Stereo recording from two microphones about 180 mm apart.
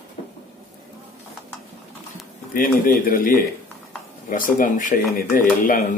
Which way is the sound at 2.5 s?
50° left (ahead or behind).